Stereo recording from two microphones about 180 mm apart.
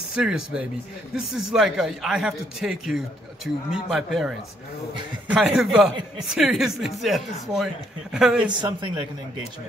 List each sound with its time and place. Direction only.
0.1 s speech: 5° right (ahead or behind)
5.4 s speech: centre (ahead or behind)
8.5 s a man's voice: 25° right (ahead or behind)